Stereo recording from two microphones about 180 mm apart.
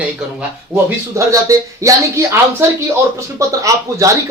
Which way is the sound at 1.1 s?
15° right (ahead or behind).